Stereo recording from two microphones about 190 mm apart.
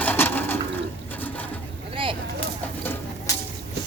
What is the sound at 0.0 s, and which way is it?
Pigeon, 10° left (ahead or behind).